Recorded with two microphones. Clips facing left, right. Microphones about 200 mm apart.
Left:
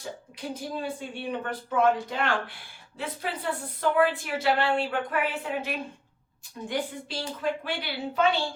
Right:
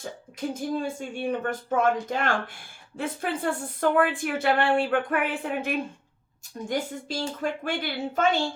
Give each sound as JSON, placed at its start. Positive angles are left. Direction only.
{"t": 0.3, "sound": "a woman's voice", "side_deg": -45}